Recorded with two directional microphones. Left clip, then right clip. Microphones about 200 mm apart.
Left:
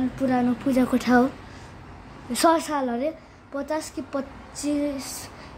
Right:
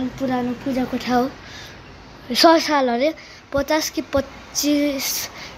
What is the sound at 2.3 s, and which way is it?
A woman's voice, centre (ahead or behind).